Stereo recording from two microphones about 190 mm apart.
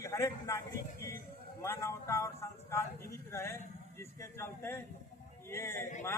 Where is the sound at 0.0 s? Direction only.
15° left (ahead or behind).